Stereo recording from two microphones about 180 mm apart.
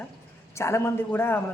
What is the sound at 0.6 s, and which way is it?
Speech, 15° left (ahead or behind).